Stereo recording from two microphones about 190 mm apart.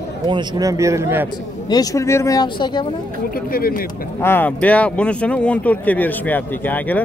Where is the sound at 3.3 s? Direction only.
50° left (ahead or behind).